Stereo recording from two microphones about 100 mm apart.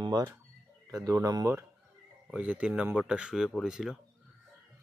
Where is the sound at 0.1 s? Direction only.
40° right (ahead or behind).